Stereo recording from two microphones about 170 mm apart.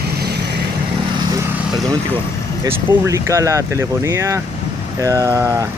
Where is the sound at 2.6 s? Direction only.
20° right (ahead or behind).